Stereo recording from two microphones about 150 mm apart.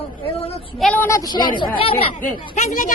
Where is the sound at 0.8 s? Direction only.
10° left (ahead or behind); by 2.5 s 35° left (ahead or behind).